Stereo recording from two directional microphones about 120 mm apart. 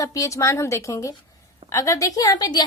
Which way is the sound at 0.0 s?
25° left (ahead or behind).